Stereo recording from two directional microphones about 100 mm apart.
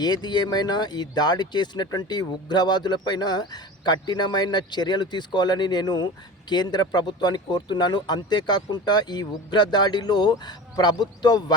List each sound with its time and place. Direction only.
0.0 s speech: 45° left (ahead or behind)